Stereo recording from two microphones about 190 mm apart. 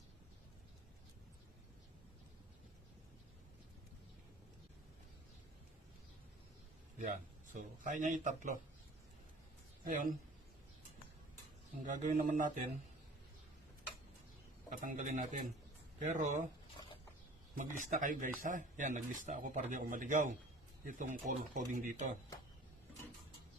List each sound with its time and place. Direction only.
7.0 s speech: 40° right (ahead or behind)
9.8 s speech: 45° right (ahead or behind)
11.8 s speech: 40° right (ahead or behind)
14.7 s speech: 45° right (ahead or behind)
17.6 s speech: 40° right (ahead or behind)